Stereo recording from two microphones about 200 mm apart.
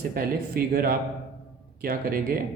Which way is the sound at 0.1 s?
45° right (ahead or behind).